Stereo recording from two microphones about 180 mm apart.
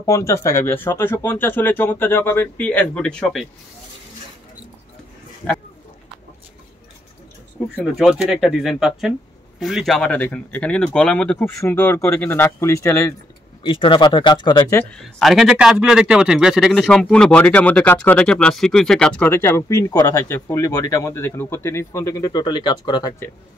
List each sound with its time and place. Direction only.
0.0 s speech: 15° left (ahead or behind)
5.4 s speech: 5° left (ahead or behind)
7.6 s speech: 5° left (ahead or behind)
13.6 s speech: 25° left (ahead or behind)
14.8 s speech: 5° left (ahead or behind); by 23.1 s 25° left (ahead or behind)